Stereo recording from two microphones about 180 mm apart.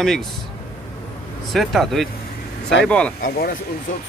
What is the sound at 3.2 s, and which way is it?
Speech, 55° left (ahead or behind).